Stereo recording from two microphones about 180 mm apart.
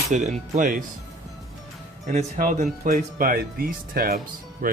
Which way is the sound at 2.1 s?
40° right (ahead or behind).